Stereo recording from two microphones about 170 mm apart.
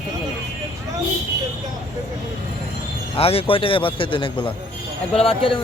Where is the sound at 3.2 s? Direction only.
35° left (ahead or behind).